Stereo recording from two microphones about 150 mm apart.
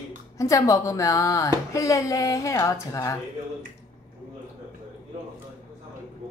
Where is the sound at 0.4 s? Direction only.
20° left (ahead or behind).